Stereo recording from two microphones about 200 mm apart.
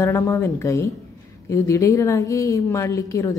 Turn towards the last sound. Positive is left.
turn(degrees=15)  # may be behind; listen again after turning